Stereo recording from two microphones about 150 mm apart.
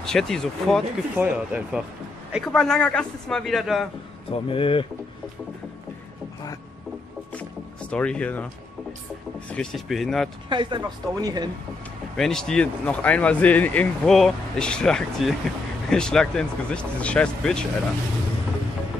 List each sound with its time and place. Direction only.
0.0 s speech: 5° left (ahead or behind)
1.1 s speech: 10° right (ahead or behind)
2.3 s speech: centre (ahead or behind)
4.3 s speech: 35° left (ahead or behind)
7.3 s vehicle: 10° left (ahead or behind)
9.5 s speech: 5° left (ahead or behind)
10.5 s a woman's voice: 30° right (ahead or behind)
12.2 s speech: 5° left (ahead or behind)